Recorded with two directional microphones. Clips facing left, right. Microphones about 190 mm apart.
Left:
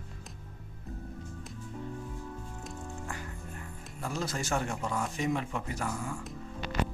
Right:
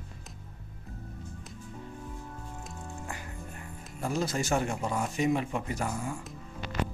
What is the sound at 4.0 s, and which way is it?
Speech, 15° right (ahead or behind).